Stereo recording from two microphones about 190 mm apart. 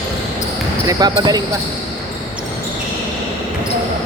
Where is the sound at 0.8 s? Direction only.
20° right (ahead or behind).